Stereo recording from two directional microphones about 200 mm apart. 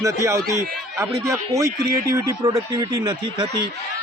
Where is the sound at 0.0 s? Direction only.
15° right (ahead or behind).